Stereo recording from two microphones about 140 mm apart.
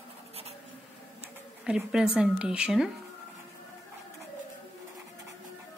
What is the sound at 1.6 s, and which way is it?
Speech, 5° right (ahead or behind).